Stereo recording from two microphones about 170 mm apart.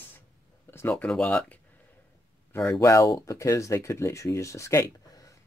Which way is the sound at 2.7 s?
20° left (ahead or behind).